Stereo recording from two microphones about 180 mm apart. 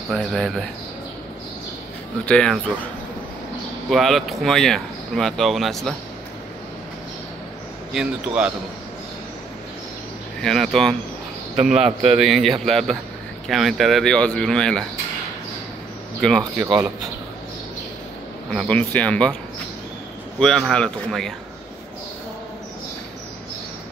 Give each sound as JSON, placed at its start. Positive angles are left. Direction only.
{"t": 0.1, "sound": "speech", "side_deg": 0}
{"t": 2.2, "sound": "speech", "side_deg": 5}
{"t": 3.9, "sound": "speech", "side_deg": 0}
{"t": 7.9, "sound": "speech", "side_deg": -5}
{"t": 10.4, "sound": "speech", "side_deg": 0}
{"t": 12.0, "sound": "a man's voice", "side_deg": -35}
{"t": 12.3, "sound": "speech", "side_deg": 0}
{"t": 16.2, "sound": "speech", "side_deg": 5}
{"t": 18.5, "sound": "speech", "side_deg": 5}
{"t": 20.3, "sound": "speech", "side_deg": 0}